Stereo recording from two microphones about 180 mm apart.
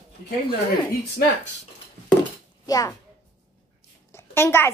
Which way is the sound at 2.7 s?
20° left (ahead or behind).